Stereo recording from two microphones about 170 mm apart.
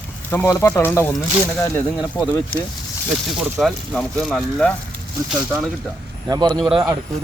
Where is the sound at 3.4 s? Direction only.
Centre (ahead or behind).